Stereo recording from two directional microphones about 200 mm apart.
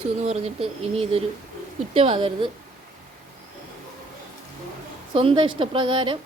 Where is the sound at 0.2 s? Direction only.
30° right (ahead or behind).